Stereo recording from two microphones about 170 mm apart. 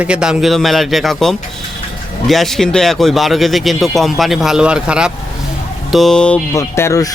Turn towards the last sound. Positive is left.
turn(degrees=15)  # may be behind; listen again after turning